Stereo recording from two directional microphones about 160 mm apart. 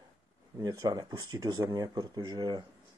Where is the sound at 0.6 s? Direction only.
25° right (ahead or behind).